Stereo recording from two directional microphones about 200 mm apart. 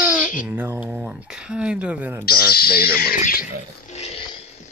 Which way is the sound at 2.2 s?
50° left (ahead or behind).